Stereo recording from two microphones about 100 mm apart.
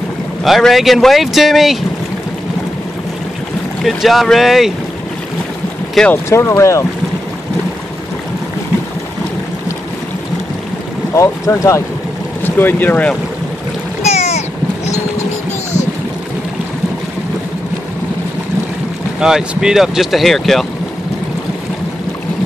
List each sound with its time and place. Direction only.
0.4 s speech: centre (ahead or behind)
3.8 s speech: centre (ahead or behind)
6.2 s speech: 25° left (ahead or behind)
11.1 s speech: 30° left (ahead or behind)
12.4 s speech: 20° left (ahead or behind)
14.0 s a sound: 90° left
19.1 s speech: 5° right (ahead or behind)